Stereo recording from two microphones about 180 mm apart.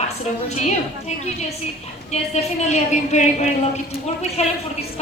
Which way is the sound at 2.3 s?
40° left (ahead or behind).